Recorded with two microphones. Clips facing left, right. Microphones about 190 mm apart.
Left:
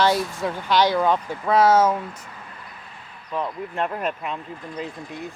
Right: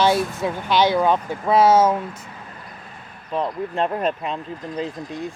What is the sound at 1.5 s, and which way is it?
Speech, 25° right (ahead or behind).